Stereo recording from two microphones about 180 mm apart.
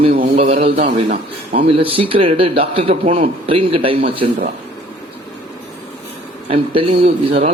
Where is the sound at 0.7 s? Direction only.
55° right (ahead or behind).